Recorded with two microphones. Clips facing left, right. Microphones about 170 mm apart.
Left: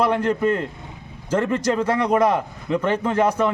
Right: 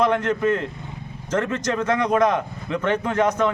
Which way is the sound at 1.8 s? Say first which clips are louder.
Right 1 dB; 10° left (ahead or behind).